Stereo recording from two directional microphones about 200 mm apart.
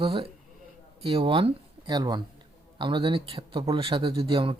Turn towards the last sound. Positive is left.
turn(degrees=-25)  # may be behind; listen again after turning